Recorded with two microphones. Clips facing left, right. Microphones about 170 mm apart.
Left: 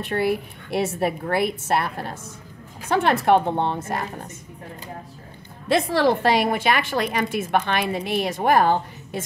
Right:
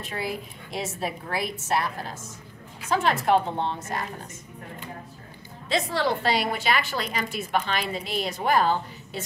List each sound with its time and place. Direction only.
0.0 s a woman's voice: 65° left (ahead or behind)
5.7 s a woman's voice: 55° left (ahead or behind)